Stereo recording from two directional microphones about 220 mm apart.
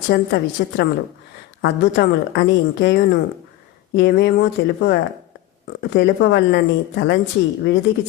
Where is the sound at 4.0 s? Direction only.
50° left (ahead or behind).